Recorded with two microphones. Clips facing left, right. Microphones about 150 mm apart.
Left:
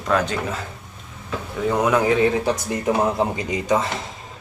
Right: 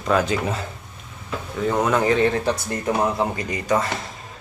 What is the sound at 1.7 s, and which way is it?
Speech, 5° left (ahead or behind).